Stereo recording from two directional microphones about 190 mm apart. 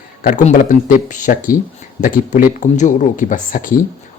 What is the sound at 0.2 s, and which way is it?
Speech, 45° left (ahead or behind).